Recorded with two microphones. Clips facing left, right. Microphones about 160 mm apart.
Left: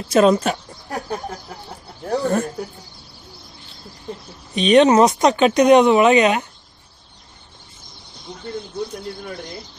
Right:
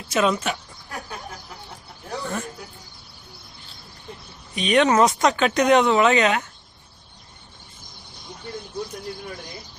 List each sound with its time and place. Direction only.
0.1 s a sound: 35° left (ahead or behind)
2.0 s snake: 45° left (ahead or behind)
4.6 s speech: 25° left (ahead or behind)